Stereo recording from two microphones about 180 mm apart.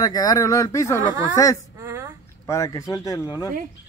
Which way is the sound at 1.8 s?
15° right (ahead or behind).